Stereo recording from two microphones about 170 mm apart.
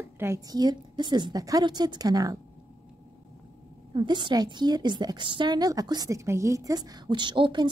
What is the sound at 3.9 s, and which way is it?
A woman's voice, 25° right (ahead or behind).